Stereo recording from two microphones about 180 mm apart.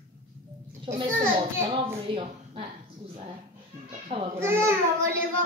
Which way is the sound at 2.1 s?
30° right (ahead or behind).